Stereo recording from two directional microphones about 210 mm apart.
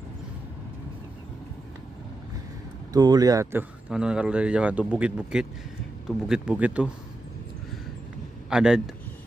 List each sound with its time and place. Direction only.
2.9 s speech: 20° right (ahead or behind)
3.9 s a man's voice: 5° right (ahead or behind)
8.5 s a man's voice: 5° right (ahead or behind)